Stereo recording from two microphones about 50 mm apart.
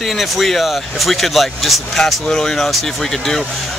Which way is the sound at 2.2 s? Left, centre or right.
Centre.